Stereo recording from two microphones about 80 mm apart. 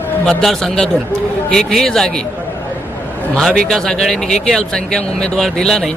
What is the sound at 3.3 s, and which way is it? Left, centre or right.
Speech, centre.